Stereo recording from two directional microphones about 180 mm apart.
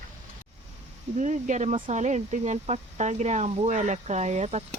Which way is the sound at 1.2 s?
40° right (ahead or behind).